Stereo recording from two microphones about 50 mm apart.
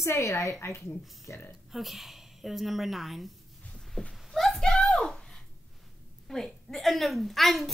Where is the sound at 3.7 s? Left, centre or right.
Centre.